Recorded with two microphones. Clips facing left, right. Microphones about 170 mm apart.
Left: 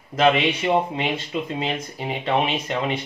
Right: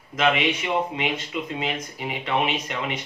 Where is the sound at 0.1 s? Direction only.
35° left (ahead or behind).